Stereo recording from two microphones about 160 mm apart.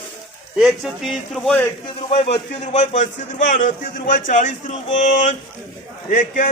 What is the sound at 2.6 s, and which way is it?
A man's voice, 45° left (ahead or behind).